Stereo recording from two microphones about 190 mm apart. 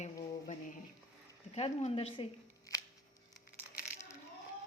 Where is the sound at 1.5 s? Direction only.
35° left (ahead or behind).